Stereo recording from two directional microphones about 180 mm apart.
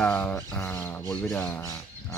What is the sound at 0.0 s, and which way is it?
Speech, 5° left (ahead or behind).